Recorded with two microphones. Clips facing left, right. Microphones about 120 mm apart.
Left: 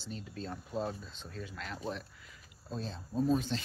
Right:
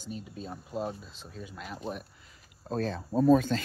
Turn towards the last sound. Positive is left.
turn(degrees=-60)  # may be behind; listen again after turning